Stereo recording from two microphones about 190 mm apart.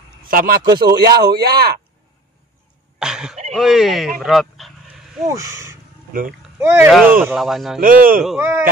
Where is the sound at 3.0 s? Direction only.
5° right (ahead or behind).